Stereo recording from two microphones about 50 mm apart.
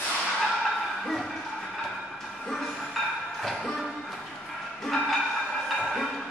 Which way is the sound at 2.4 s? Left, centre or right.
Centre.